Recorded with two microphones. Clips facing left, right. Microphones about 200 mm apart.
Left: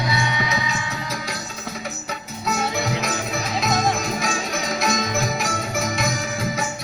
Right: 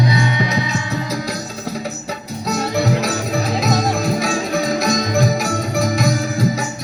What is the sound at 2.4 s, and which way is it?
Music, 35° right (ahead or behind).